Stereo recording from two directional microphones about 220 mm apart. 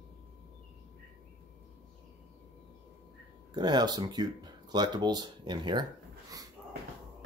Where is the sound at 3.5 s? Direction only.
20° right (ahead or behind).